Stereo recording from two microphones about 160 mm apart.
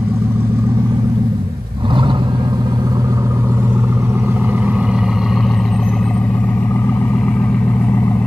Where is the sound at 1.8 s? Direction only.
30° right (ahead or behind).